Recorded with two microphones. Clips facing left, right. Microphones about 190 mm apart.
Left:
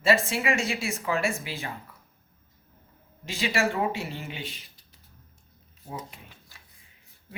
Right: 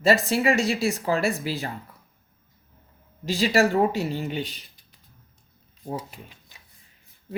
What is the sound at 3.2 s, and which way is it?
Speech, 35° right (ahead or behind).